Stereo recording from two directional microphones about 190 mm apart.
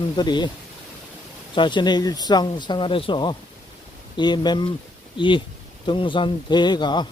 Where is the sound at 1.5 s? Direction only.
25° left (ahead or behind).